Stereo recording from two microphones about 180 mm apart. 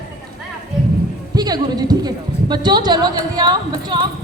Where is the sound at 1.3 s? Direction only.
20° right (ahead or behind).